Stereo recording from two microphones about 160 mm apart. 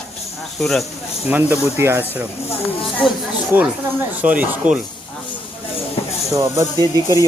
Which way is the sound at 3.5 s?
15° right (ahead or behind).